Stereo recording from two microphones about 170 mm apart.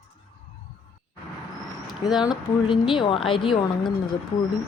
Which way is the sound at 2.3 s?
30° left (ahead or behind).